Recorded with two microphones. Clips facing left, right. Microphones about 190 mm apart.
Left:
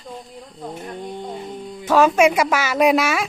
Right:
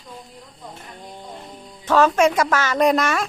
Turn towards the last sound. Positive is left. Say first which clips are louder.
# left 1 dB
turn(degrees=5)  # may be behind; listen again after turning